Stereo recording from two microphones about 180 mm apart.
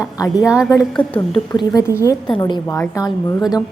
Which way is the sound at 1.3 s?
25° left (ahead or behind).